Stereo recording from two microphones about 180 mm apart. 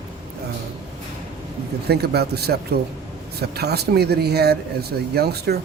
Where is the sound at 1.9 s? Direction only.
65° right (ahead or behind).